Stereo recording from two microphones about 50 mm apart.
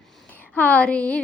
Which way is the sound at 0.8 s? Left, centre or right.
Left.